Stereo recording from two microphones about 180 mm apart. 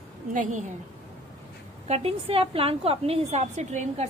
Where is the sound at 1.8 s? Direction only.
35° right (ahead or behind).